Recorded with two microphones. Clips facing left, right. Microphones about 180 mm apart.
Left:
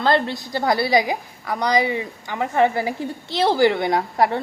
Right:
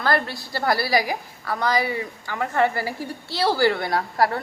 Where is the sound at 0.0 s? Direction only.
20° left (ahead or behind).